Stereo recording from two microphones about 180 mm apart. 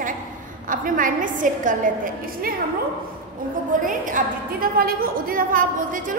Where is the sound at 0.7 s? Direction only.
50° right (ahead or behind).